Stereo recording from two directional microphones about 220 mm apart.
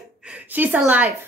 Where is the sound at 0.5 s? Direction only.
10° right (ahead or behind).